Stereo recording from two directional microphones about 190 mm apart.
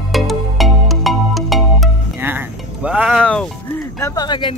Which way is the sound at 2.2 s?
10° right (ahead or behind).